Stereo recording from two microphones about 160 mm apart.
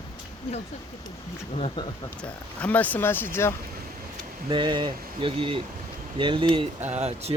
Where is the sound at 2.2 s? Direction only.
10° left (ahead or behind).